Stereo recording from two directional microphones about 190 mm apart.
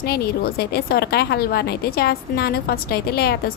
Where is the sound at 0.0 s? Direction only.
55° left (ahead or behind).